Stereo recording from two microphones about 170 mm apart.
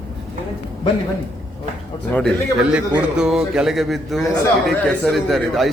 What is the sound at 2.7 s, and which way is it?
A man's voice, 5° right (ahead or behind).